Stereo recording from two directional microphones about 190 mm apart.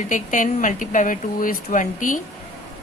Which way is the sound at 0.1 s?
45° left (ahead or behind).